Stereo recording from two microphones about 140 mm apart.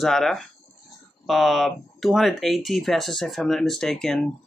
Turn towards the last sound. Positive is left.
turn(degrees=0)  # may be behind; listen again after turning